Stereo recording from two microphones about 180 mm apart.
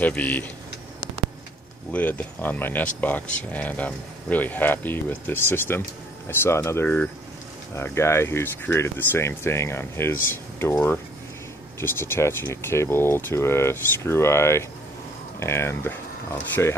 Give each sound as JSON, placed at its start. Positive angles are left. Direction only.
{"t": 0.0, "sound": "speech", "side_deg": 10}
{"t": 1.9, "sound": "speech", "side_deg": 10}